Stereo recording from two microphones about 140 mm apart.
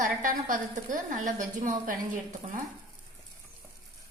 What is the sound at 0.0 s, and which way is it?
A woman's voice, 70° right (ahead or behind).